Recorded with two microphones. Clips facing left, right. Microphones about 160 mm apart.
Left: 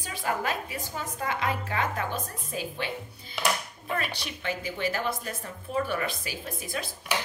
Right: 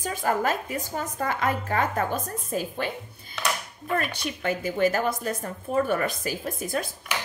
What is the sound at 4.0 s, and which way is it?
A woman's voice, 45° right (ahead or behind).